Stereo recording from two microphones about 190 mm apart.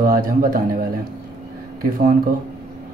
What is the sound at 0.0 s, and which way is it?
Speech, 50° right (ahead or behind).